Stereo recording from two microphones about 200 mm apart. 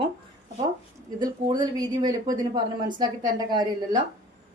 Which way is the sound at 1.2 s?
20° right (ahead or behind).